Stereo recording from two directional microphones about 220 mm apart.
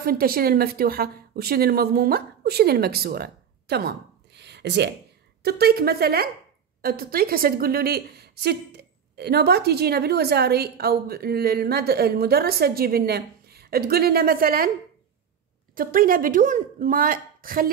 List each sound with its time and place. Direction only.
0.0 s speech: 45° right (ahead or behind)
15.7 s a woman's voice: 40° right (ahead or behind)